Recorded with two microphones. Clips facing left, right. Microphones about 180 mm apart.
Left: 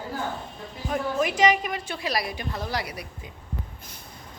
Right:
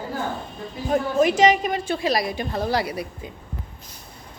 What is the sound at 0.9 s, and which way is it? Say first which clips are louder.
A woman's voice: right 6 dB; 25° right (ahead or behind).